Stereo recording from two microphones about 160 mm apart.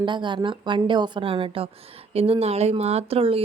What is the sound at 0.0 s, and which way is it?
Speech, 30° right (ahead or behind).